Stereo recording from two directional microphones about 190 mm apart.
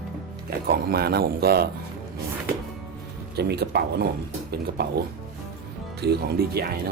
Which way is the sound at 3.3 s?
60° right (ahead or behind).